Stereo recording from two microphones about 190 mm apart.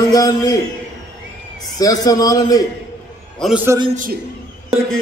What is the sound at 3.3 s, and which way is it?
Speech, centre (ahead or behind).